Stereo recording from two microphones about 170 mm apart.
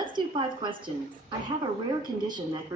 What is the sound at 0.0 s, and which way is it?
Speech, 30° right (ahead or behind).